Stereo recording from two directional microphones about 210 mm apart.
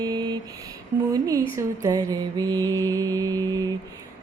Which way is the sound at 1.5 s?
15° right (ahead or behind).